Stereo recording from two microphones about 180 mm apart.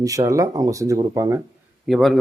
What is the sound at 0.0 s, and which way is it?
A man's voice, 20° right (ahead or behind).